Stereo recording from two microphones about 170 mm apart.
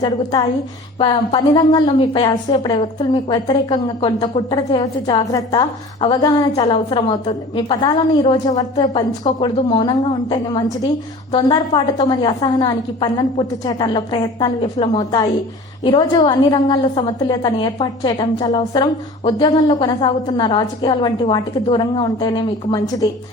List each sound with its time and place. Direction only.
0.0 s a woman's voice: 25° left (ahead or behind)